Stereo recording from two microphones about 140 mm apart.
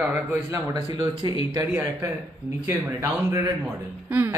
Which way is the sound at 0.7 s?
25° right (ahead or behind).